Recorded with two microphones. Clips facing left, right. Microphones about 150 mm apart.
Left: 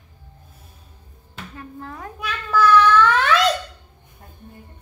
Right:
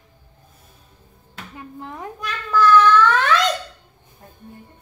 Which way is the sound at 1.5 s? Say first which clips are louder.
Right 1 dB; 20° right (ahead or behind).